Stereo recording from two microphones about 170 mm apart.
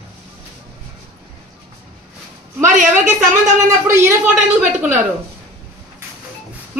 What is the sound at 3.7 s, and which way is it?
Speech, 20° right (ahead or behind).